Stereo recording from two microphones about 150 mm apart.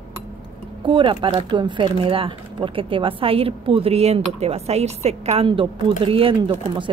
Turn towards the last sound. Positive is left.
turn(degrees=-35)  # may be behind; listen again after turning